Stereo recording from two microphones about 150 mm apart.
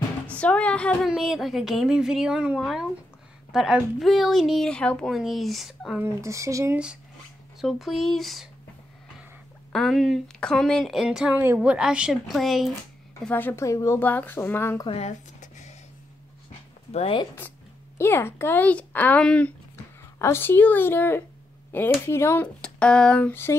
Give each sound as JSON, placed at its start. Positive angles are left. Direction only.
{"t": 0.3, "sound": "speech", "side_deg": 10}
{"t": 1.0, "sound": "a woman's voice", "side_deg": 0}
{"t": 5.9, "sound": "speech", "side_deg": -20}
{"t": 7.6, "sound": "a woman's voice", "side_deg": 0}
{"t": 9.7, "sound": "a woman's voice", "side_deg": 0}
{"t": 13.2, "sound": "a woman's voice", "side_deg": 10}
{"t": 14.9, "sound": "a sound", "side_deg": 45}
{"t": 16.9, "sound": "speech", "side_deg": 40}
{"t": 17.9, "sound": "a woman's voice", "side_deg": 15}
{"t": 22.6, "sound": "a woman's voice", "side_deg": 5}